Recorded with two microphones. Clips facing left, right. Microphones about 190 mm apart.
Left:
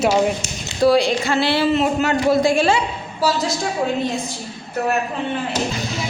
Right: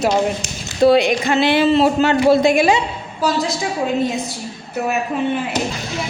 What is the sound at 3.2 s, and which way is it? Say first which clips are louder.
Speech: right 1 dB; centre (ahead or behind).